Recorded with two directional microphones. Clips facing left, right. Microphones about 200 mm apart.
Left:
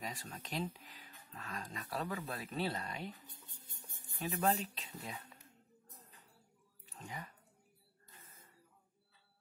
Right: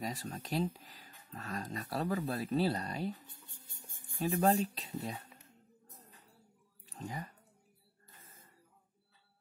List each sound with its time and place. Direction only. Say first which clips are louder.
0.0 s speech: right 6 dB; 40° right (ahead or behind)
4.2 s speech: right 6 dB; 40° right (ahead or behind)
6.9 s speech: right 6 dB; 35° right (ahead or behind)